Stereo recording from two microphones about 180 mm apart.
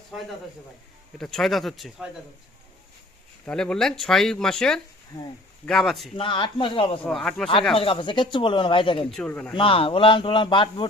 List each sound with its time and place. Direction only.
0.1 s speech: centre (ahead or behind)
3.4 s speech: 5° left (ahead or behind)
5.1 s speech: 20° left (ahead or behind)
5.6 s speech: centre (ahead or behind)
6.1 s speech: 30° left (ahead or behind)
7.0 s speech: centre (ahead or behind)
7.8 s speech: 30° left (ahead or behind)
9.0 s speech: 5° left (ahead or behind)
9.6 s speech: 30° left (ahead or behind)